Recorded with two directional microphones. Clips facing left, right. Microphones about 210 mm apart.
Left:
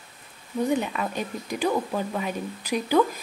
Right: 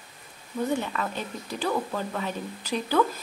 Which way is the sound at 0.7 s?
15° left (ahead or behind).